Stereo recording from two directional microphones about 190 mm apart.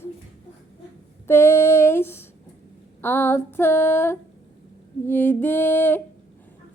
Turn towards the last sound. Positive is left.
turn(degrees=10)  # may be behind; listen again after turning